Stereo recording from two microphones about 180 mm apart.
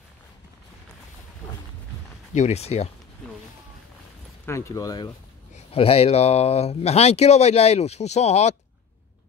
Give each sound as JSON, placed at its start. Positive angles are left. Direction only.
{"t": 2.3, "sound": "speech", "side_deg": 40}
{"t": 4.5, "sound": "speech", "side_deg": 15}
{"t": 5.7, "sound": "speech", "side_deg": 35}